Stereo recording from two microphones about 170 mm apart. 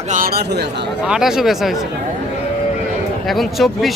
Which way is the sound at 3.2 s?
Centre (ahead or behind).